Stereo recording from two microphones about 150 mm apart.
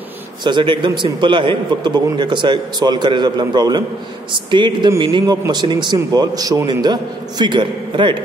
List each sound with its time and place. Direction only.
0.4 s a man's voice: 30° right (ahead or behind)